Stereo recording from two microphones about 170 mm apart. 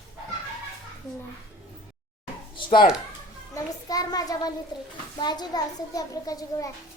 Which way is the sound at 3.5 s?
20° left (ahead or behind).